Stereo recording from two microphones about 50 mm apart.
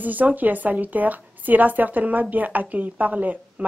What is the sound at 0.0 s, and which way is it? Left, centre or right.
A woman's voice, right.